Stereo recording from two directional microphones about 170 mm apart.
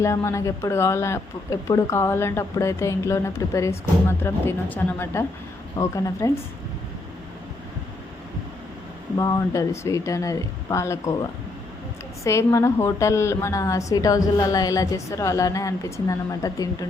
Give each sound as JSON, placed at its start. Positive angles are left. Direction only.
{"t": 0.0, "sound": "a woman's voice", "side_deg": 15}
{"t": 9.1, "sound": "a woman's voice", "side_deg": 20}